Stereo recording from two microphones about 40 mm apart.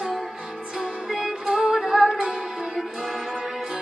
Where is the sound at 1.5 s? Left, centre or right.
Right.